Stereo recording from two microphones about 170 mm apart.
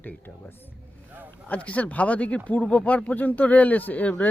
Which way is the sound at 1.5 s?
10° left (ahead or behind).